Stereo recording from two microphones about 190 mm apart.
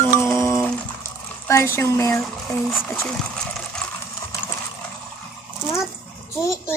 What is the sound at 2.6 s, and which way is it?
Speech, centre (ahead or behind).